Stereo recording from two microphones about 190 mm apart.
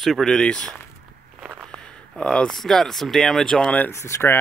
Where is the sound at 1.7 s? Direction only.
5° left (ahead or behind).